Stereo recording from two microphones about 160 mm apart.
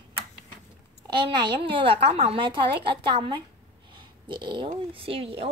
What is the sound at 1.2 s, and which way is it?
Speech, 30° right (ahead or behind).